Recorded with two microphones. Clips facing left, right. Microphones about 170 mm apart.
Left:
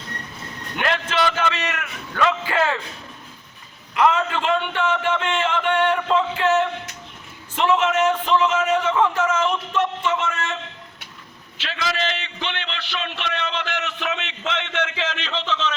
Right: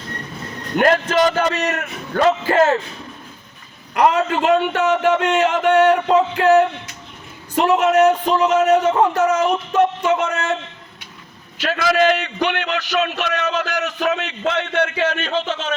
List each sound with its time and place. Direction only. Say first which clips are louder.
0.8 s a man's voice: right 7 dB; 40° right (ahead or behind)
3.9 s a man's voice: right 3 dB; 40° right (ahead or behind)
11.6 s a man's voice: right 10 dB; 50° right (ahead or behind)